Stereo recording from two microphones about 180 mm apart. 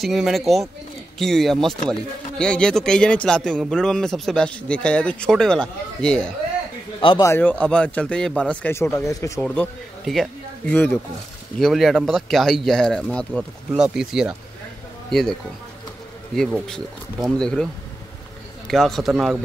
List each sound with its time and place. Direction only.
0.0 s speech: centre (ahead or behind)
7.0 s speech: 30° left (ahead or behind)
7.2 s speech: 10° left (ahead or behind)
9.4 s speech: 5° left (ahead or behind)
16.5 s speech: centre (ahead or behind)
18.7 s speech: centre (ahead or behind)